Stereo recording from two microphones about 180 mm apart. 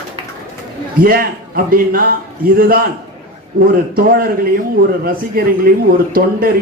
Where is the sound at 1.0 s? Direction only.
55° right (ahead or behind).